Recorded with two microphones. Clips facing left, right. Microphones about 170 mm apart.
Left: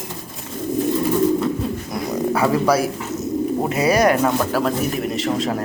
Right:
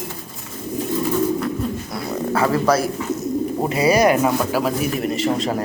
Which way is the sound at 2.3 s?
10° left (ahead or behind).